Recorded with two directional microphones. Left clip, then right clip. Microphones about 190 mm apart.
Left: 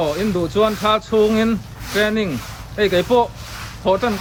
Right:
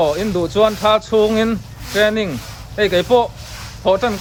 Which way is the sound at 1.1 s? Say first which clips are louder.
Right 1 dB; 35° right (ahead or behind).